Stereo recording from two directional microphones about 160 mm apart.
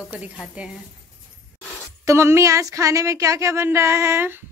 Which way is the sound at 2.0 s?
15° right (ahead or behind).